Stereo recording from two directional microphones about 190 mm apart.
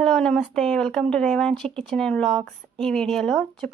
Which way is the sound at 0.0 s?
5° left (ahead or behind).